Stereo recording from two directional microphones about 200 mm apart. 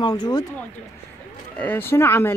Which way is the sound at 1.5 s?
10° left (ahead or behind).